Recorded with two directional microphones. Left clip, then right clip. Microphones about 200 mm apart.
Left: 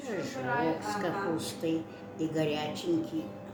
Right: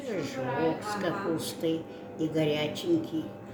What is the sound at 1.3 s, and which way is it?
Speech, 20° right (ahead or behind).